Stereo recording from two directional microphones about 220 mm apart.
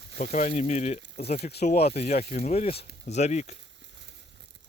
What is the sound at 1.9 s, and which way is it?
Speech, 30° left (ahead or behind).